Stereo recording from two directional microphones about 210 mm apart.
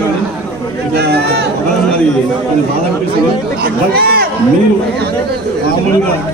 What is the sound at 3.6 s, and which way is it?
Speech, 45° right (ahead or behind).